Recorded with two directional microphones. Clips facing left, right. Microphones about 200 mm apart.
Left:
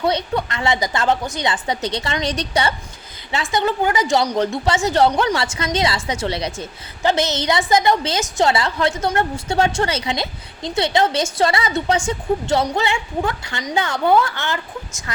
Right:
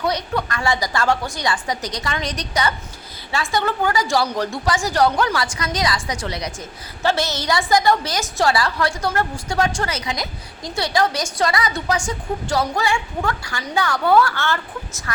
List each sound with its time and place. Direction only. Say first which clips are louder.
0.0 s a woman's voice: left 2 dB; 25° left (ahead or behind)
3.5 s a woman's voice: left 2 dB; 20° left (ahead or behind)